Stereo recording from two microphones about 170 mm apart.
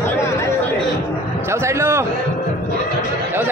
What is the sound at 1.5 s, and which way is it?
Speech, 15° right (ahead or behind).